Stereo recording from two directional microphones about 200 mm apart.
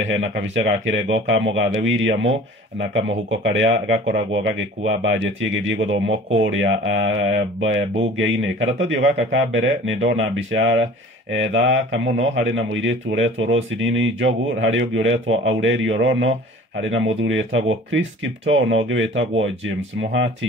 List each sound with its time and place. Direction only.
0.0 s speech: 70° right (ahead or behind)